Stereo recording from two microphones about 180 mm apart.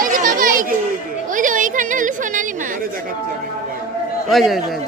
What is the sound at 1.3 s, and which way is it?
Chatter, 45° right (ahead or behind).